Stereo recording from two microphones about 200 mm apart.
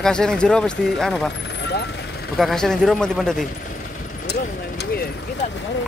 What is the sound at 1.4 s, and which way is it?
Vehicle, 60° left (ahead or behind).